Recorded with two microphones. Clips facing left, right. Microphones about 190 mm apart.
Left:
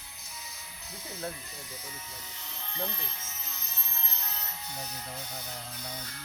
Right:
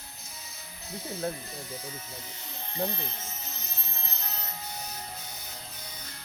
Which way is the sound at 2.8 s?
35° right (ahead or behind).